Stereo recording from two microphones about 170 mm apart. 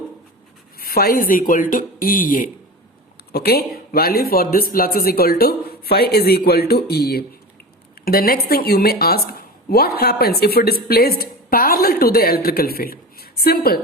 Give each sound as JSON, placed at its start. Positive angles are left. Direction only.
{"t": 0.8, "sound": "a woman's voice", "side_deg": 65}
{"t": 3.3, "sound": "a woman's voice", "side_deg": 65}